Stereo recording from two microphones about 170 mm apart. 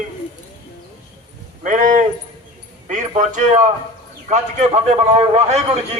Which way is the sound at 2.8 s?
45° right (ahead or behind).